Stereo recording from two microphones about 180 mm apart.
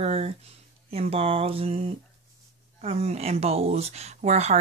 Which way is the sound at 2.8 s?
35° right (ahead or behind).